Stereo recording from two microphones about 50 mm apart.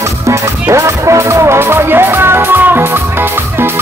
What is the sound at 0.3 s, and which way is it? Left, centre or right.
Music, right.